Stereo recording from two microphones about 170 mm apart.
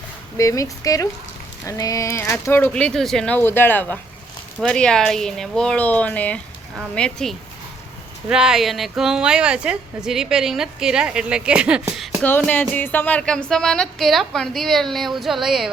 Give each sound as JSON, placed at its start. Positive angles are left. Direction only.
{"t": 0.3, "sound": "a woman's voice", "side_deg": 20}
{"t": 12.5, "sound": "a woman's voice", "side_deg": 10}